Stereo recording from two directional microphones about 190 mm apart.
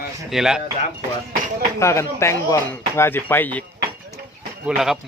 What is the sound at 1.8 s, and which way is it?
Speech, 15° left (ahead or behind).